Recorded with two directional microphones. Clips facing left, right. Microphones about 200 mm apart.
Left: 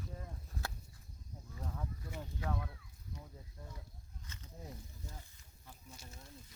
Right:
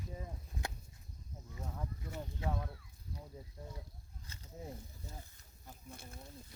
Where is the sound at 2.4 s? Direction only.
20° right (ahead or behind).